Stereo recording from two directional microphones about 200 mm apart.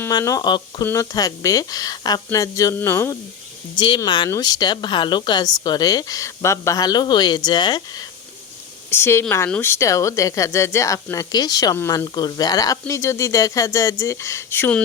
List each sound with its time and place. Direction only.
0.0 s a woman's voice: 15° left (ahead or behind)
3.8 s a woman's voice: 25° left (ahead or behind)